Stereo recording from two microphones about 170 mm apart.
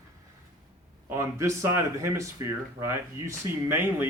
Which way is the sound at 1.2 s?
15° right (ahead or behind).